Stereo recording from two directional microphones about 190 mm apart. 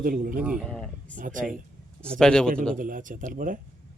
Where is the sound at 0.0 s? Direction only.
50° right (ahead or behind).